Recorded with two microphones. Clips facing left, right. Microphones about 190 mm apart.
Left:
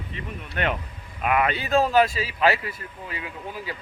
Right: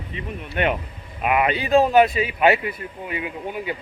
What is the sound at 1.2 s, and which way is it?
Speech, 10° right (ahead or behind).